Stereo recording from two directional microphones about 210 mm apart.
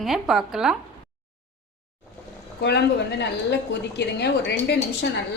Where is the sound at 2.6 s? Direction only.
55° left (ahead or behind).